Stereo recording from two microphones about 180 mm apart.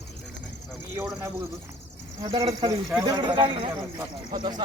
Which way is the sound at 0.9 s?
15° right (ahead or behind).